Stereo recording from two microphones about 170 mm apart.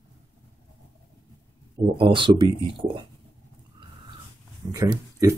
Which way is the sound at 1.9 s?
30° right (ahead or behind).